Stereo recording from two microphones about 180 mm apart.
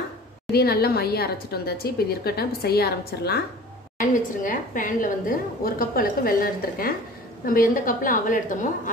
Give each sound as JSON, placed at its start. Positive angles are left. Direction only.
{"t": 0.5, "sound": "a woman's voice", "side_deg": 60}
{"t": 4.0, "sound": "a woman's voice", "side_deg": 45}